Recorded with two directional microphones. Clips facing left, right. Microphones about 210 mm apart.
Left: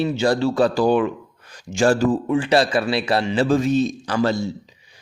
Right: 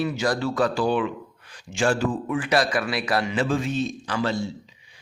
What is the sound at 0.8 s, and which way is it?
Speech, 45° left (ahead or behind).